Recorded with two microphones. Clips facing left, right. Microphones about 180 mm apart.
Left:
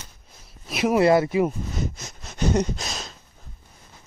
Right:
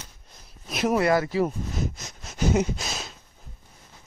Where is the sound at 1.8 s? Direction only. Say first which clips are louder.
Left 1 dB; centre (ahead or behind).